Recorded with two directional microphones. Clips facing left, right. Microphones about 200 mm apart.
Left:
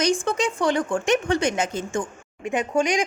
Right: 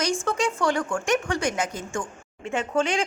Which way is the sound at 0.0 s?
20° left (ahead or behind).